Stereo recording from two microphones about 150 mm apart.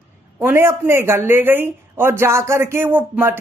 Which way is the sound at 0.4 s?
15° right (ahead or behind).